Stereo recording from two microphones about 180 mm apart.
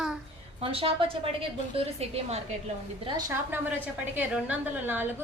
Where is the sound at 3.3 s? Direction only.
10° right (ahead or behind).